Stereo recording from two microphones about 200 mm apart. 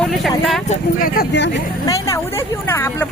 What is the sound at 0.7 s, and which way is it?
Speech, 45° left (ahead or behind).